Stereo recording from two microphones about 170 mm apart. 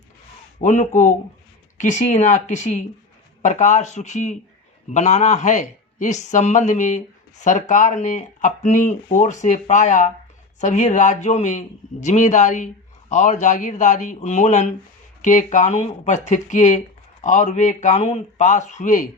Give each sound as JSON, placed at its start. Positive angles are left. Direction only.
{"t": 0.6, "sound": "a man's voice", "side_deg": 45}